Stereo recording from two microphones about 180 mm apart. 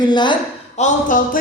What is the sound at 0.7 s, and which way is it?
Speech, 40° left (ahead or behind).